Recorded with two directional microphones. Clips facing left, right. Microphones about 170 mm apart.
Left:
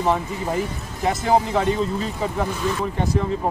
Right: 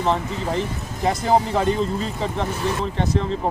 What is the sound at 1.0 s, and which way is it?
Speech, centre (ahead or behind).